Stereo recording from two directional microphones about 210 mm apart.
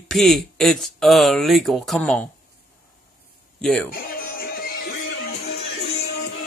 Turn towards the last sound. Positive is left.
turn(degrees=50)  # may be behind; listen again after turning